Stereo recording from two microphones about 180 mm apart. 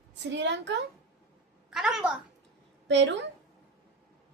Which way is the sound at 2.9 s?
85° right.